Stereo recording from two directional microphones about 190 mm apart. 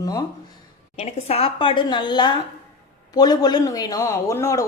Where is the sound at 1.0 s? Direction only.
35° left (ahead or behind); by 4.6 s 15° left (ahead or behind).